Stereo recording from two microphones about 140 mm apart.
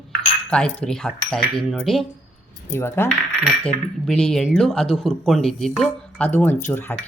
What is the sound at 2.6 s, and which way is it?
Speech, 15° left (ahead or behind).